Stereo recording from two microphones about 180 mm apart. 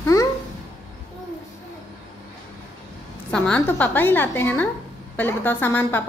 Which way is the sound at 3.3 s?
10° left (ahead or behind).